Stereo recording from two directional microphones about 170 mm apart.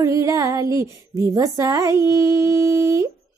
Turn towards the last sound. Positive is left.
turn(degrees=-15)  # may be behind; listen again after turning